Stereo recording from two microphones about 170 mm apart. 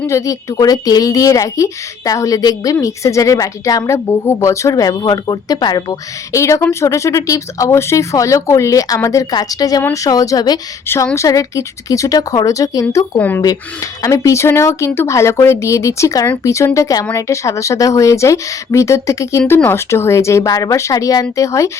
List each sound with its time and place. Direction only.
0.0 s speech: 20° left (ahead or behind)